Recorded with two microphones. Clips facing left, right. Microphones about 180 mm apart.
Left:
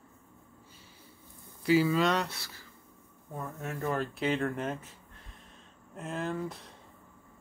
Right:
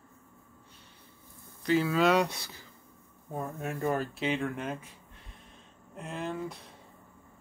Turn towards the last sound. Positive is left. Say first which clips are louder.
# left 1 dB
turn(degrees=0)  # may be behind; listen again after turning